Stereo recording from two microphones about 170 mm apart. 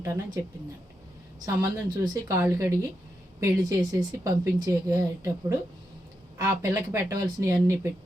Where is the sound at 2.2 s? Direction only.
20° right (ahead or behind).